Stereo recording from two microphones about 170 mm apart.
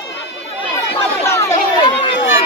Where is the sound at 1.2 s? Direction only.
15° left (ahead or behind).